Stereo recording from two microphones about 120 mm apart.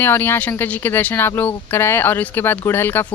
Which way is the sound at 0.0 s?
15° left (ahead or behind).